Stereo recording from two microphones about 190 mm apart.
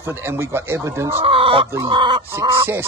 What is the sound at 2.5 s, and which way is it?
Speech, 10° right (ahead or behind).